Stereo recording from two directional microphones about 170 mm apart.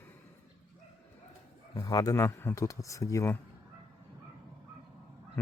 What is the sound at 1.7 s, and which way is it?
A man's voice, 20° left (ahead or behind).